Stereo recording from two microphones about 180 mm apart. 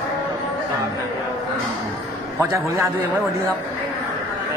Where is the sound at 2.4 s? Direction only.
15° right (ahead or behind).